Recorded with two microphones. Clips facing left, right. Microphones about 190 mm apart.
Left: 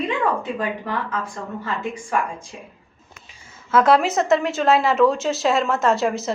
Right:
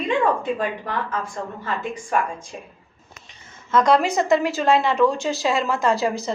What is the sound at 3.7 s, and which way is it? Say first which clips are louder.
A woman's voice: left 1 dB; 5° left (ahead or behind).